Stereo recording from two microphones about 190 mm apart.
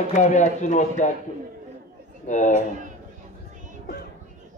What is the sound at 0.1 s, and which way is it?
A man's voice, 40° left (ahead or behind).